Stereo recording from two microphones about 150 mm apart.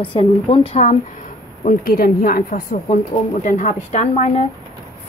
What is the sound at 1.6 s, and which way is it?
Speech, 75° left (ahead or behind).